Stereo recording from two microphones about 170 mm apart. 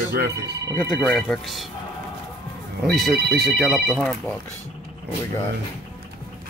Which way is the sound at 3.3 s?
70° right (ahead or behind).